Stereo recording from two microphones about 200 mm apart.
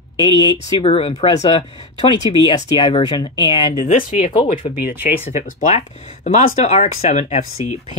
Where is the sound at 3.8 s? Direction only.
35° left (ahead or behind).